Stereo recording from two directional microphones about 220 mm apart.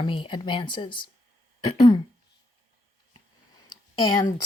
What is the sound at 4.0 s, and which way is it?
Speech, 20° left (ahead or behind).